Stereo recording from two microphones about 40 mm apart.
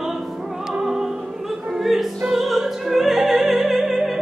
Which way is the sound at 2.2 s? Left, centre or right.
Centre.